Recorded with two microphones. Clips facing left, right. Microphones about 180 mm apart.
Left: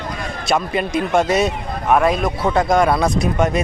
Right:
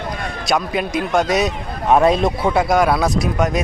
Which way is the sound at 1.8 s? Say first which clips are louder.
Right 2 dB; 20° right (ahead or behind).